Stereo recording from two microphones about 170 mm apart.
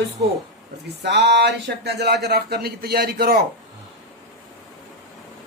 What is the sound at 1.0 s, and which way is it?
Speech, 85° right.